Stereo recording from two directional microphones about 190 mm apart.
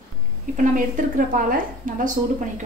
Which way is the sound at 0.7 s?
45° right (ahead or behind).